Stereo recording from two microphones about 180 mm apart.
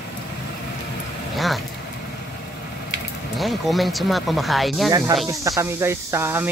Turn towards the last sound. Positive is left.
turn(degrees=-10)  # may be behind; listen again after turning